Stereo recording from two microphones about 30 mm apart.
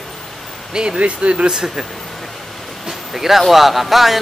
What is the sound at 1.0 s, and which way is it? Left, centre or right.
Speech, right.